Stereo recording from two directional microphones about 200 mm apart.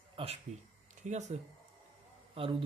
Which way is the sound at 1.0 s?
35° right (ahead or behind).